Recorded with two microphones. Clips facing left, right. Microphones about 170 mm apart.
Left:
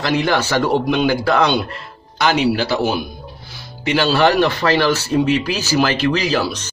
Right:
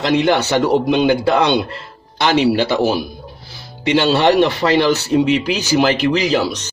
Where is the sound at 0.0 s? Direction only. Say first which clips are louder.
Right 3 dB; 20° right (ahead or behind).